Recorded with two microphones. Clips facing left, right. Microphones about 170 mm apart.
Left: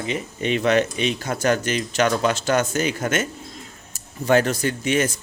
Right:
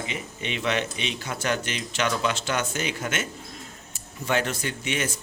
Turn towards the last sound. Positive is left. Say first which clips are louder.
# left 8 dB
turn(degrees=40)  # may be behind; listen again after turning